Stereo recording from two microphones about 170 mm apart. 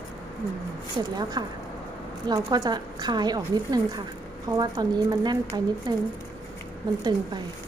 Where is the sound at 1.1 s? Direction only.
25° right (ahead or behind).